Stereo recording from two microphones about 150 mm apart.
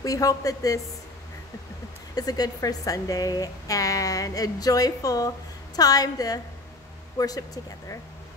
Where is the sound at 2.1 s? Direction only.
25° left (ahead or behind).